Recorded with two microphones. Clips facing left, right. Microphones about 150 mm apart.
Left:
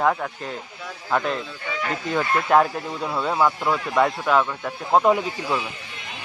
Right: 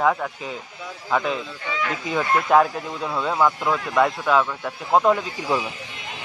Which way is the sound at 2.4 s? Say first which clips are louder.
Even; centre (ahead or behind).